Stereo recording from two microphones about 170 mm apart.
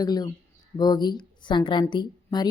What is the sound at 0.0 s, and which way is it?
A woman's voice, 25° left (ahead or behind).